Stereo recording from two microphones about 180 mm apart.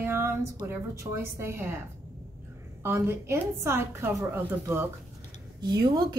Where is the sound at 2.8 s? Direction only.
15° right (ahead or behind).